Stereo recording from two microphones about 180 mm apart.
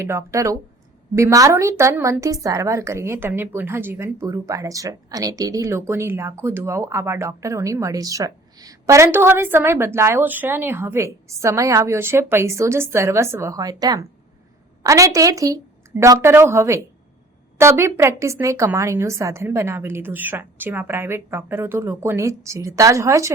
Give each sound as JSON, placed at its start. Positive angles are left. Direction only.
{"t": 0.0, "sound": "a woman's voice", "side_deg": -15}